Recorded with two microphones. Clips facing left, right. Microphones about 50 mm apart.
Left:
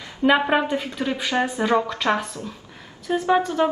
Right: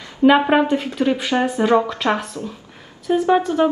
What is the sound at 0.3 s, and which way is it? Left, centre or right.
A woman's voice, centre.